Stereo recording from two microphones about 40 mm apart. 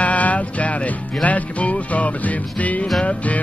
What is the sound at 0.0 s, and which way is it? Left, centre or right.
Music, left.